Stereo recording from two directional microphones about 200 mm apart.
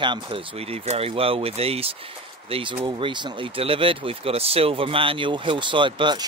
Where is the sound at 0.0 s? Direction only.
25° right (ahead or behind).